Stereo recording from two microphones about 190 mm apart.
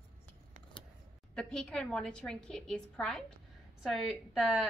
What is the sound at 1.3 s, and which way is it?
A woman's voice, 5° left (ahead or behind).